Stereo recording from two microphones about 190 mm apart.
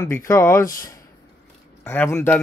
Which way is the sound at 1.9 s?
15° left (ahead or behind).